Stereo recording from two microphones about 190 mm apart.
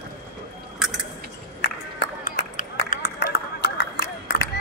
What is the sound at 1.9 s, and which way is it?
Run, 50° left (ahead or behind).